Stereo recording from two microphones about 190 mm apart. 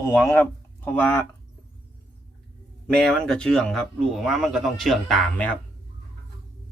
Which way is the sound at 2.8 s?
5° left (ahead or behind).